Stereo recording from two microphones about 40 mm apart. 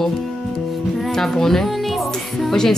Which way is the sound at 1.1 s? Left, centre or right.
Centre.